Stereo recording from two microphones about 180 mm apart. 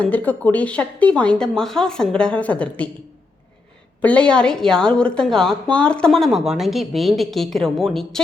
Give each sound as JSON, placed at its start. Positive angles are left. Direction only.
{"t": 0.0, "sound": "speech", "side_deg": 10}
{"t": 4.0, "sound": "a woman's voice", "side_deg": 5}